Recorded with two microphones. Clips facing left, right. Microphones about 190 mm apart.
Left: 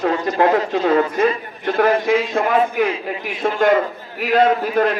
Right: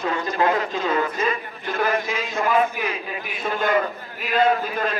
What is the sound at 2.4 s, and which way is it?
A man's voice, 70° left (ahead or behind).